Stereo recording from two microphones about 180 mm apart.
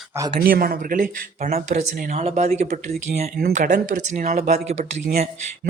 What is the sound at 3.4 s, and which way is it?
Speech, 60° right (ahead or behind).